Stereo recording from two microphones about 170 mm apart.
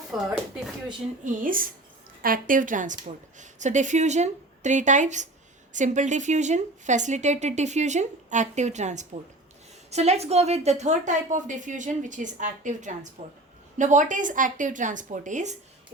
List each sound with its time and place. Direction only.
0.1 s speech: 5° right (ahead or behind)
1.2 s a woman's voice: 55° right (ahead or behind)